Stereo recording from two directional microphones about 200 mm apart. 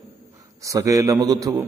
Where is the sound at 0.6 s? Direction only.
15° right (ahead or behind).